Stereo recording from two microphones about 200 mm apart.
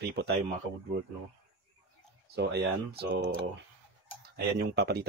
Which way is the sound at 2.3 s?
55° right (ahead or behind).